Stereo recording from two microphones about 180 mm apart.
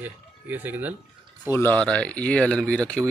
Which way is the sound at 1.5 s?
10° left (ahead or behind).